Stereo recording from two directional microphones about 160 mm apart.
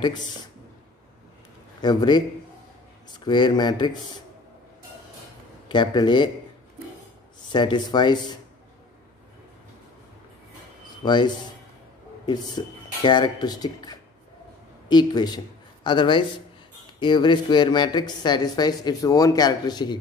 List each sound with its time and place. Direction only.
1.8 s speech: 25° left (ahead or behind)
3.3 s speech: 25° left (ahead or behind)
5.7 s speech: 30° left (ahead or behind)
7.5 s speech: 30° left (ahead or behind)
11.1 s a man's voice: 25° left (ahead or behind)